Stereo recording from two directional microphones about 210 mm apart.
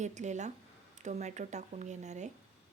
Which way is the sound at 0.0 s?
35° right (ahead or behind).